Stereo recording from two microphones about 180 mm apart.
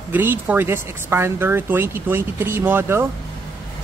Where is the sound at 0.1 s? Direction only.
10° right (ahead or behind).